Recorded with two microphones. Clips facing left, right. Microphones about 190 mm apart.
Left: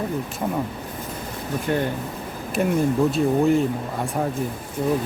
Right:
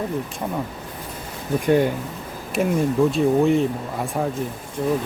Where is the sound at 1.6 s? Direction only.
15° right (ahead or behind).